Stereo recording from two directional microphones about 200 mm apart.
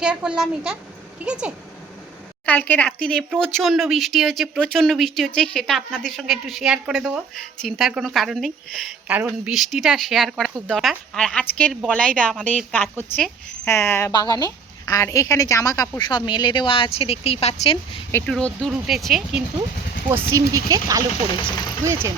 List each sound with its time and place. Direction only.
0.0 s speech: 5° right (ahead or behind)
2.5 s a woman's voice: 10° left (ahead or behind); by 18.0 s 30° left (ahead or behind)
18.1 s speech: 5° left (ahead or behind)
20.5 s speech: 15° right (ahead or behind)